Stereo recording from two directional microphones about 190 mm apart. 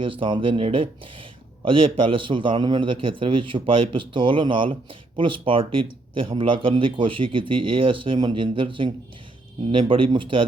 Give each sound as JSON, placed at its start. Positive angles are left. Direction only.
{"t": 0.0, "sound": "speech", "side_deg": -25}